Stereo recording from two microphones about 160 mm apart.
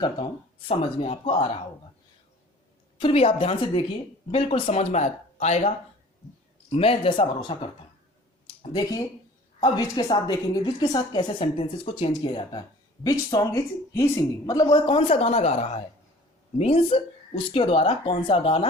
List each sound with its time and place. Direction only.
0.7 s a woman's voice: 40° left (ahead or behind)
3.0 s a woman's voice: 35° left (ahead or behind)